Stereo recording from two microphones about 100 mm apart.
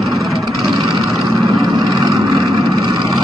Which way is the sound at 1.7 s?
40° right (ahead or behind).